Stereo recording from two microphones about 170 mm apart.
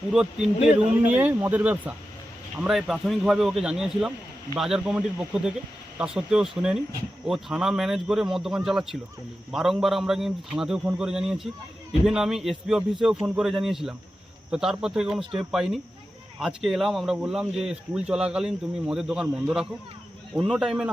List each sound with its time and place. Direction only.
0.1 s speech: 5° right (ahead or behind)
15.2 s speech: 30° right (ahead or behind)
15.5 s speech: centre (ahead or behind)